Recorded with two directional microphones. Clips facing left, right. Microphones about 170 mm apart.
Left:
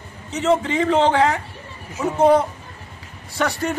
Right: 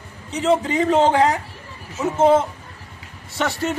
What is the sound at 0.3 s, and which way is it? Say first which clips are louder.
Speech: even; 35° right (ahead or behind).